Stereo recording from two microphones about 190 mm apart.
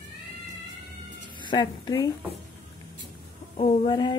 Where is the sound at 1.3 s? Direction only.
25° left (ahead or behind).